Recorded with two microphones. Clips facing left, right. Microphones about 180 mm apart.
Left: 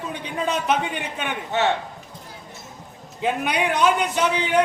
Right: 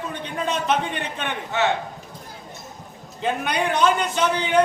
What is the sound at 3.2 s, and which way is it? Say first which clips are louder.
A man's voice: left 1 dB; 10° left (ahead or behind).